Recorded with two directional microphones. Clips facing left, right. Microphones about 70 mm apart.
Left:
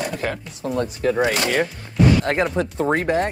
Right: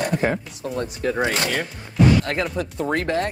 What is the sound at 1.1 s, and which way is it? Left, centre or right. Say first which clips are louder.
Speech: left 3 dB; right.